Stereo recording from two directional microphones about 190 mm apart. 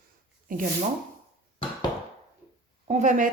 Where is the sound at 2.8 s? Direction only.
40° right (ahead or behind).